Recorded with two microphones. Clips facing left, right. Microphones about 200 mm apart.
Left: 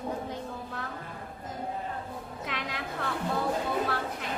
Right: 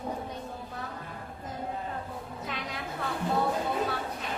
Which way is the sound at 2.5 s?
90° left.